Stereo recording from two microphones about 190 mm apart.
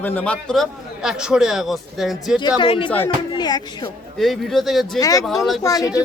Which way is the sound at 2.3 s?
25° left (ahead or behind).